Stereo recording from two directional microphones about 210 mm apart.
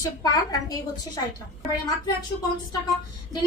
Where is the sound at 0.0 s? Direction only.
15° left (ahead or behind).